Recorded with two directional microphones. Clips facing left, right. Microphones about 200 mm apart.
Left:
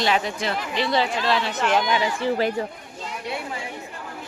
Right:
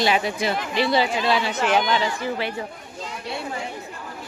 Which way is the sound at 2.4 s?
40° left (ahead or behind).